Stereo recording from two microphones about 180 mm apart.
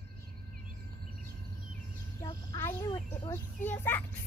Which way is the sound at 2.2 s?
20° left (ahead or behind).